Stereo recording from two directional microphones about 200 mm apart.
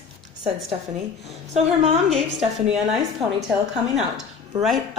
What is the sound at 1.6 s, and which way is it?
Speech, 30° right (ahead or behind).